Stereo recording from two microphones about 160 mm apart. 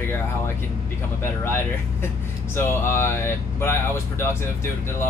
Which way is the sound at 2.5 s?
15° left (ahead or behind).